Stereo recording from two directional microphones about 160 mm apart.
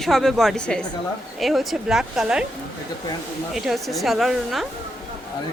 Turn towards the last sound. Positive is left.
turn(degrees=0)  # may be behind; listen again after turning